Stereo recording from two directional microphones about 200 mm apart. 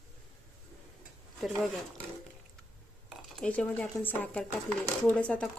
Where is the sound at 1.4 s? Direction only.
Centre (ahead or behind).